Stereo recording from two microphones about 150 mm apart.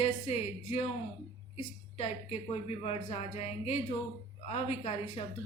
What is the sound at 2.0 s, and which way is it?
Speech, 45° left (ahead or behind).